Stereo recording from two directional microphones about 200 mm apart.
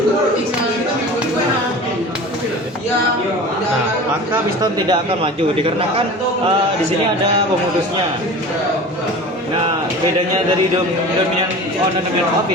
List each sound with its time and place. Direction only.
4.6 s a man's voice: 25° right (ahead or behind)